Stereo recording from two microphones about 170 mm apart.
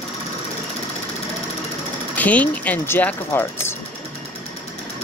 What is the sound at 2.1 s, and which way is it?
Speech, 10° left (ahead or behind).